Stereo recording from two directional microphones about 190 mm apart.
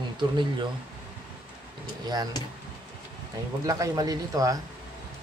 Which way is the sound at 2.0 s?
20° right (ahead or behind).